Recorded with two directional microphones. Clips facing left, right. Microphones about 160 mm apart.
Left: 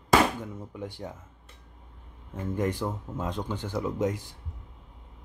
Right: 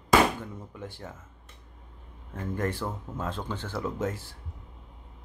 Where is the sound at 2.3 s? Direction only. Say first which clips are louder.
Left 2 dB; 15° left (ahead or behind).